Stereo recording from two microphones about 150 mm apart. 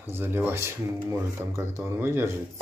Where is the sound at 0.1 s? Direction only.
15° right (ahead or behind).